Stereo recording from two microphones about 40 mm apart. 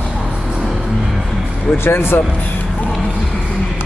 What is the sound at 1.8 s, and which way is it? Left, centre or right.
Speech, left.